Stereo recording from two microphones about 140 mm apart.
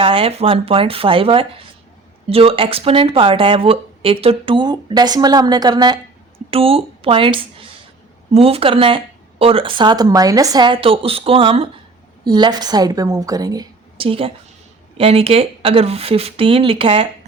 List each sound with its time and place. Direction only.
0.0 s speech: 40° right (ahead or behind)
6.5 s a woman's voice: 40° right (ahead or behind); by 13.7 s 25° right (ahead or behind)
14.0 s speech: 40° right (ahead or behind)